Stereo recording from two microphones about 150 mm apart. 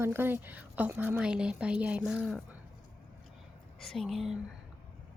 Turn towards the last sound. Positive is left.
turn(degrees=0)  # may be behind; listen again after turning